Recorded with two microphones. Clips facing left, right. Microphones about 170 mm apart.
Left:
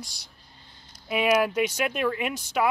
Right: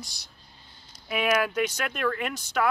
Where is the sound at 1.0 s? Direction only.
Centre (ahead or behind).